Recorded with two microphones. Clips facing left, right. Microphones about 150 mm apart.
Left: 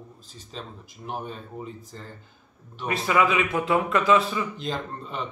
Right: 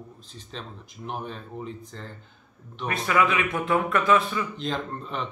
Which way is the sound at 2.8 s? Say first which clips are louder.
Left 1 dB; 20° left (ahead or behind).